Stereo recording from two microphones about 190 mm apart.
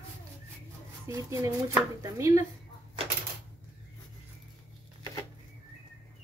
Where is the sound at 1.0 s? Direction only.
15° right (ahead or behind).